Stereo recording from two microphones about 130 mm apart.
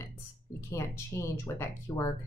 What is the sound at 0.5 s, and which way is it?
Speech, 20° left (ahead or behind).